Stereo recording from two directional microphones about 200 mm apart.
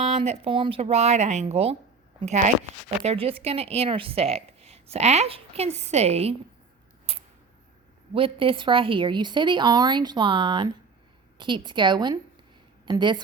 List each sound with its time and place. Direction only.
0.0 s a woman's voice: 35° right (ahead or behind)
7.1 s a sound: 30° right (ahead or behind)
8.1 s a woman's voice: 25° right (ahead or behind)